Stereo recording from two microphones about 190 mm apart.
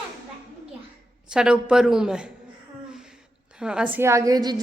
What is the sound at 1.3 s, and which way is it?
Speech, 5° right (ahead or behind).